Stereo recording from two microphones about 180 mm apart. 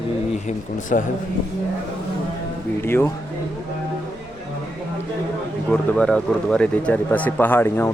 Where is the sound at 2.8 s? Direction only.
15° left (ahead or behind).